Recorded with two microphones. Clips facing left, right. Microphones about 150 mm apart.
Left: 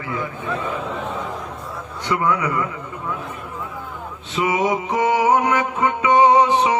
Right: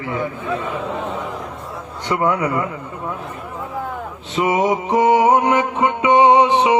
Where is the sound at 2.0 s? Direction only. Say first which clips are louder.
Right 2 dB; 30° right (ahead or behind).